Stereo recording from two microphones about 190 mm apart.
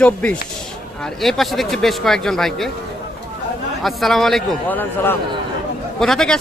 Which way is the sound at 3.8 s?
Centre (ahead or behind).